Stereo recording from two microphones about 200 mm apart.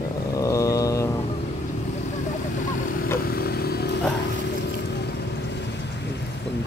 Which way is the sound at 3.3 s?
50° left (ahead or behind).